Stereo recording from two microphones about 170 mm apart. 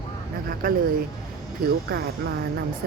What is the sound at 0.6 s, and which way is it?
Speech, 55° right (ahead or behind).